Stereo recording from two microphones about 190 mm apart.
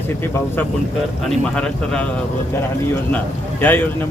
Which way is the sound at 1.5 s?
5° left (ahead or behind).